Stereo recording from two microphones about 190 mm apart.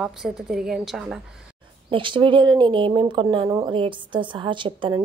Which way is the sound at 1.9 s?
25° right (ahead or behind).